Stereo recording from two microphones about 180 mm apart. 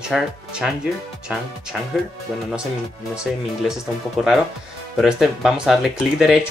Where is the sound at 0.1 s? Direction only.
Centre (ahead or behind).